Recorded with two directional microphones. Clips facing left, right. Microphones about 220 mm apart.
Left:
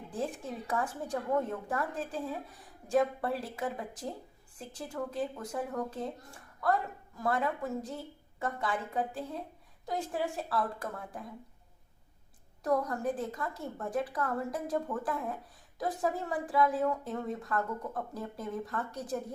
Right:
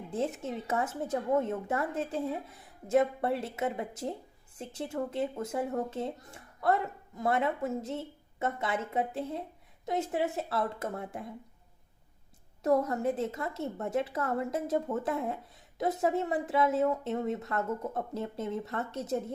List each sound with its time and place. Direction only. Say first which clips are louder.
0.1 s a woman's voice: right 4 dB; 25° right (ahead or behind)
12.6 s a woman's voice: right 3 dB; 25° right (ahead or behind)